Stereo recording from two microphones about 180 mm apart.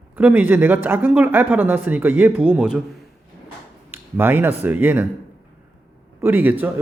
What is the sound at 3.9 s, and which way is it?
Speech, 10° right (ahead or behind).